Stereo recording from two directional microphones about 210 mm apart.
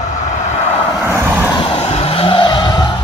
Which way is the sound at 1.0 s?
10° right (ahead or behind).